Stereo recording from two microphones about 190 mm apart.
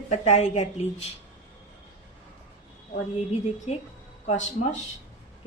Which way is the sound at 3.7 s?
35° left (ahead or behind).